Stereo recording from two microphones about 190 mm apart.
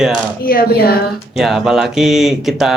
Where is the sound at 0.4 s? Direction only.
50° left (ahead or behind).